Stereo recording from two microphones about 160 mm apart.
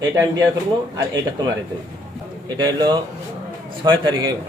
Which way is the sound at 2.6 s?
25° right (ahead or behind).